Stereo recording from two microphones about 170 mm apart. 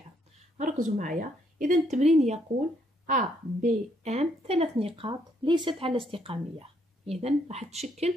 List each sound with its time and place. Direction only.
0.6 s a woman's voice: 50° right (ahead or behind)